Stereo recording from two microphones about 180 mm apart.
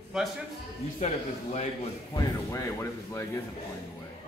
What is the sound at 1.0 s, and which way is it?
Speech, 35° left (ahead or behind).